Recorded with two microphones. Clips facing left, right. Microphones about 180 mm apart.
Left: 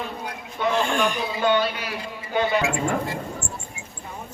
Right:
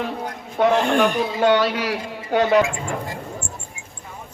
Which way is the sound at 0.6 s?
75° right (ahead or behind).